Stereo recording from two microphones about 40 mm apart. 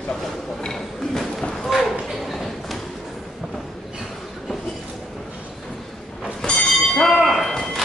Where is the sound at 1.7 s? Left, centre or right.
Centre.